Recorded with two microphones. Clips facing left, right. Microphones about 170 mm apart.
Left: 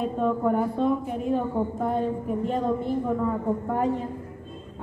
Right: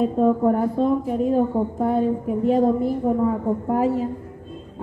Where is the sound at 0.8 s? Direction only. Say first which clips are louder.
Right 4 dB; centre (ahead or behind).